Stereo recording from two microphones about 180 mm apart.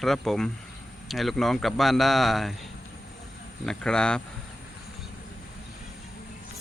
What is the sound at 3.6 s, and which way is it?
Speech, 5° left (ahead or behind).